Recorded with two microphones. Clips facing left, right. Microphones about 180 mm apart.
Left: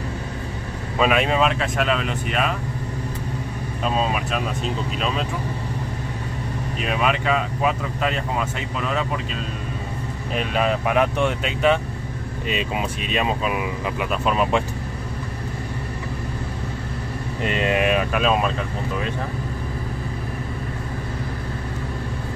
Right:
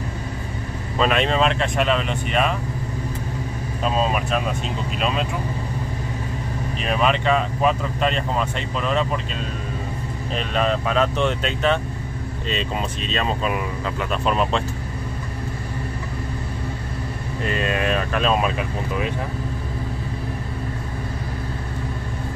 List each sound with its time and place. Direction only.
0.9 s speech: 5° left (ahead or behind)
3.8 s speech: centre (ahead or behind)
6.9 s speech: 5° left (ahead or behind)
10.3 s speech: 10° left (ahead or behind)
17.4 s speech: 20° left (ahead or behind)
18.4 s speech: 15° right (ahead or behind)